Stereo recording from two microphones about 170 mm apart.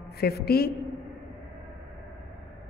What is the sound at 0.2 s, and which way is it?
Speech, 65° left (ahead or behind).